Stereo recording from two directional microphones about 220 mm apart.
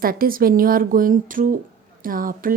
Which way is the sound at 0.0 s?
40° right (ahead or behind).